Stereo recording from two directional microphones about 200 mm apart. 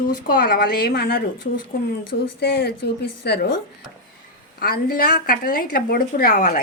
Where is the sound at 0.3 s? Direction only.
45° left (ahead or behind).